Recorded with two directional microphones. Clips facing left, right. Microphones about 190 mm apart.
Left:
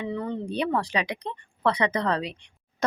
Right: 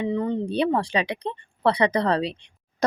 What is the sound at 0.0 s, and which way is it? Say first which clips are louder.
Speech: right 5 dB; 20° right (ahead or behind).